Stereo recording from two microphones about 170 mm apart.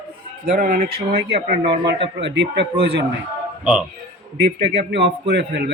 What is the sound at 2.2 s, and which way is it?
Speech, 90° right.